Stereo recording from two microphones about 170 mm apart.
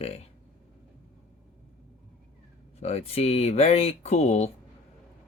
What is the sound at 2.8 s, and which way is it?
A man's voice, 40° left (ahead or behind).